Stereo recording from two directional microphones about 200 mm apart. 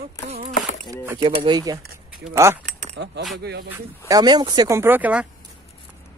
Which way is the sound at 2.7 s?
40° right (ahead or behind).